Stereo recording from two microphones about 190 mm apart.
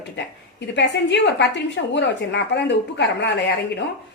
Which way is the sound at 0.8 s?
65° left (ahead or behind).